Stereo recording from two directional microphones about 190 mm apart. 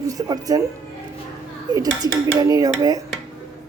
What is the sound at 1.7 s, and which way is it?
A man's voice, 20° right (ahead or behind).